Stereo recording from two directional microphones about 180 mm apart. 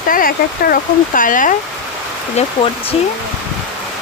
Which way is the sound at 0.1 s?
50° left (ahead or behind).